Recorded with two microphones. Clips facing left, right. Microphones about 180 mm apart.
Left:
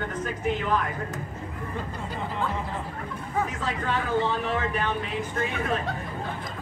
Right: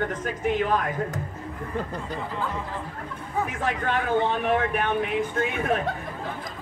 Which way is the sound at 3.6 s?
55° right (ahead or behind).